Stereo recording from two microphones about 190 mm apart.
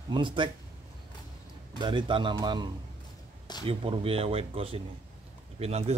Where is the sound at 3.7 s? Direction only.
30° right (ahead or behind).